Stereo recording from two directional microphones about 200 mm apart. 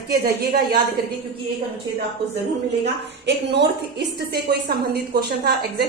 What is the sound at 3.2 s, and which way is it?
A woman's voice, 55° right (ahead or behind).